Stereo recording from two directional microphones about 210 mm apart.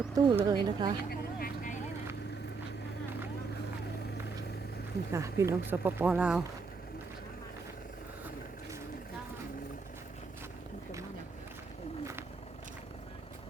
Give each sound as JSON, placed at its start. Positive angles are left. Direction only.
{"t": 0.1, "sound": "speech", "side_deg": -20}
{"t": 1.4, "sound": "vehicle", "side_deg": 40}
{"t": 5.1, "sound": "speech", "side_deg": -15}